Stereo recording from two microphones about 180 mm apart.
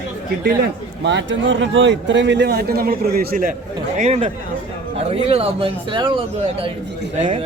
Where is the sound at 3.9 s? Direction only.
40° right (ahead or behind).